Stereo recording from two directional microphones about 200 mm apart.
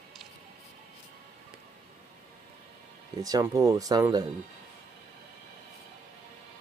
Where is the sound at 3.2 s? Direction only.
15° right (ahead or behind).